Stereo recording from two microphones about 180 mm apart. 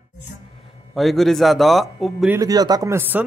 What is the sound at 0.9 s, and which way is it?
Speech, centre (ahead or behind).